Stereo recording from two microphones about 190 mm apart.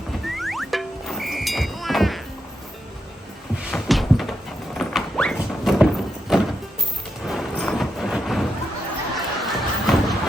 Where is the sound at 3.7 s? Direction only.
Centre (ahead or behind).